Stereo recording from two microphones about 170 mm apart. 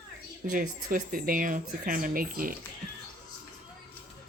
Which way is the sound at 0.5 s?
50° right (ahead or behind).